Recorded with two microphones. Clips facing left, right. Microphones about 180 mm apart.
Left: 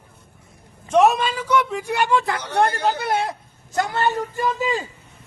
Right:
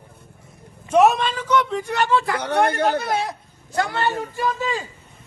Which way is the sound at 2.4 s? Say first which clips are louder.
Right 1 dB; 60° right (ahead or behind).